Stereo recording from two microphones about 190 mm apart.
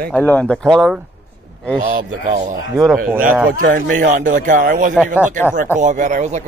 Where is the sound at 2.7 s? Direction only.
Centre (ahead or behind).